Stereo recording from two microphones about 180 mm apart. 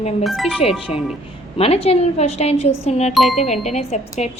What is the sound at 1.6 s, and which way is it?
Speech, 35° left (ahead or behind).